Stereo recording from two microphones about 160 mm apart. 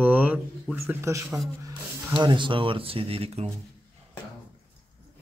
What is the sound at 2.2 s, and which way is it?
Speech, 30° right (ahead or behind).